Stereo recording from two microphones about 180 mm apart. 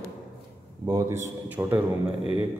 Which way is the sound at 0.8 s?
15° right (ahead or behind).